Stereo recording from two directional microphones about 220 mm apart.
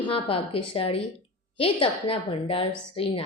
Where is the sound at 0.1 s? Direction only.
25° left (ahead or behind).